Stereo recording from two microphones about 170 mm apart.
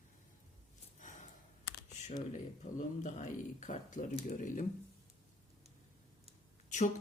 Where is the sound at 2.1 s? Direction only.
45° left (ahead or behind).